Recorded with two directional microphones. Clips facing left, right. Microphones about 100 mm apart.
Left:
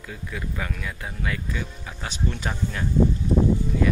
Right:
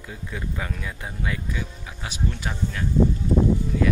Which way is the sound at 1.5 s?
10° right (ahead or behind).